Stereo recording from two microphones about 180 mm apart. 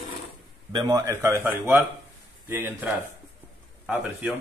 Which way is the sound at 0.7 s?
20° right (ahead or behind).